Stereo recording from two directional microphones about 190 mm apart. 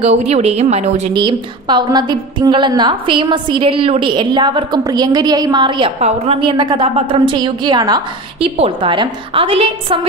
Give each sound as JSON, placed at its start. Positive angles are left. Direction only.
{"t": 0.0, "sound": "a woman's voice", "side_deg": -35}